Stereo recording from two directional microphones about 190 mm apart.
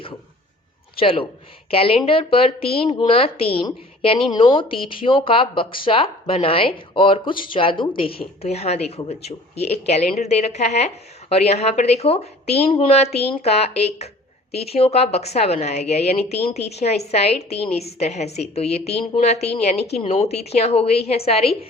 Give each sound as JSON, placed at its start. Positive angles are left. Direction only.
{"t": 0.9, "sound": "a woman's voice", "side_deg": 30}